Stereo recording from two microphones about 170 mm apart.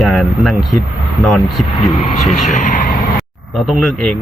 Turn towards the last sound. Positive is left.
turn(degrees=0)  # may be behind; listen again after turning